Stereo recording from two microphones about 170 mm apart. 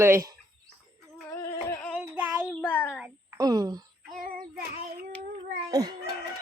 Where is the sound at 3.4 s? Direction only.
20° right (ahead or behind).